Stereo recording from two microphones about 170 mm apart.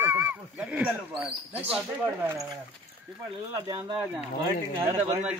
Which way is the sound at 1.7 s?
5° right (ahead or behind).